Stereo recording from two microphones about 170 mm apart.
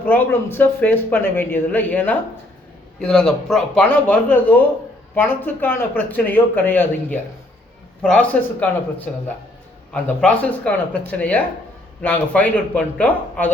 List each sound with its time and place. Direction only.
0.0 s speech: 15° left (ahead or behind)